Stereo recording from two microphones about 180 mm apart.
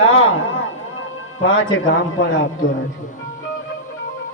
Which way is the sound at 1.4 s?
90° left.